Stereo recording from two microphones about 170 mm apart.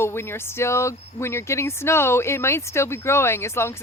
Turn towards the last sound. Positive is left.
turn(degrees=15)  # may be behind; listen again after turning